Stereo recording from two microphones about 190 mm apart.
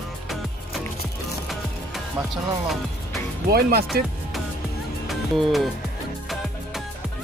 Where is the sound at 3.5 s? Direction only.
55° right (ahead or behind).